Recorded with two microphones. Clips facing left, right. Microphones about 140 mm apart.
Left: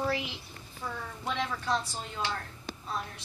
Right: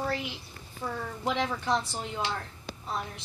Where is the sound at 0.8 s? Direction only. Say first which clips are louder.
Right 4 dB; 25° right (ahead or behind).